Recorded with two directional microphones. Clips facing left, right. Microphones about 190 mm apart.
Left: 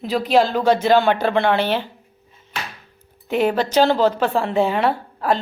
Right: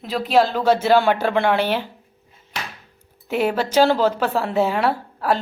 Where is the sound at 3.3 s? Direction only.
10° right (ahead or behind).